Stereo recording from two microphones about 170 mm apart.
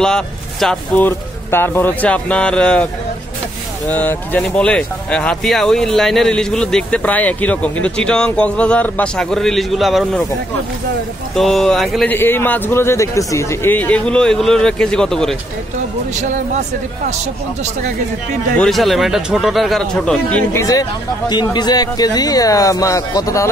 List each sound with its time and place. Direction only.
0.0 s speech: 5° left (ahead or behind)
3.9 s speech: 10° left (ahead or behind)
11.3 s speech: centre (ahead or behind)
12.1 s speech: 15° left (ahead or behind)
18.6 s speech: centre (ahead or behind)
21.3 s speech: 25° left (ahead or behind)